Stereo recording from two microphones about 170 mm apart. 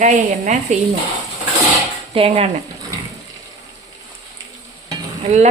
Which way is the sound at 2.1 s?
35° right (ahead or behind).